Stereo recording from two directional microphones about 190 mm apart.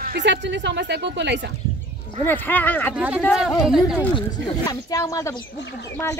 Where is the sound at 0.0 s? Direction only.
60° right (ahead or behind).